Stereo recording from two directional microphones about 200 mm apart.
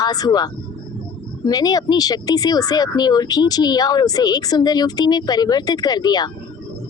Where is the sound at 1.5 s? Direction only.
20° left (ahead or behind).